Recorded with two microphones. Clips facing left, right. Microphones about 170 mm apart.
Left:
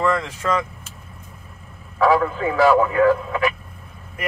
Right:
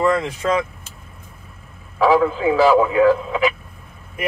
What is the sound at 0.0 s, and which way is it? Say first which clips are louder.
Speech: right 3 dB; 15° right (ahead or behind).